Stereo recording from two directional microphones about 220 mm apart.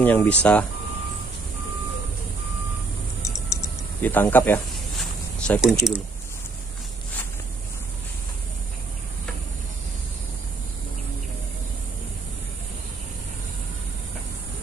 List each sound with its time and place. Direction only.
0.0 s speech: 5° left (ahead or behind)
4.0 s speech: 10° left (ahead or behind)
5.5 s speech: centre (ahead or behind)